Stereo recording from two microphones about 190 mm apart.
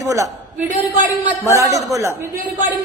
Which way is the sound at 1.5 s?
15° right (ahead or behind).